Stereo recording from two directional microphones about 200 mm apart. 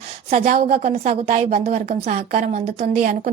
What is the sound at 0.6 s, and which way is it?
Speech, 30° right (ahead or behind).